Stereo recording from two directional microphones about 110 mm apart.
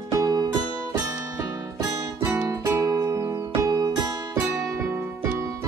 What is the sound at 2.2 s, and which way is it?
Music, 20° right (ahead or behind).